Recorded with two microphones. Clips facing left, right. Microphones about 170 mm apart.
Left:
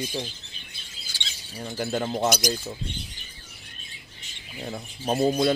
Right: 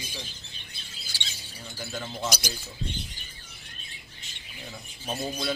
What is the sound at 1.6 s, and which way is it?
Speech, 55° left (ahead or behind).